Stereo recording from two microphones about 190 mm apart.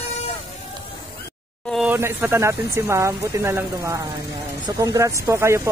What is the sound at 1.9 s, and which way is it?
Speech, 15° right (ahead or behind).